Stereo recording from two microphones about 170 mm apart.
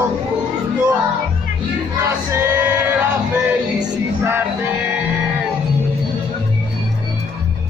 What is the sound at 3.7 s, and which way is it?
Music, 15° right (ahead or behind).